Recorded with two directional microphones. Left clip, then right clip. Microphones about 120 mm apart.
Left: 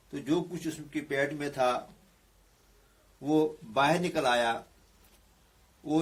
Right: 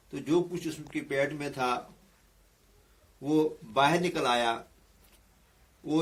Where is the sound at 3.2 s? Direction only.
30° left (ahead or behind).